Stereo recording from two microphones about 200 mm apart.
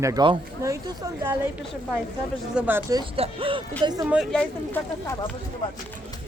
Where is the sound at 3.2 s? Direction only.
25° right (ahead or behind).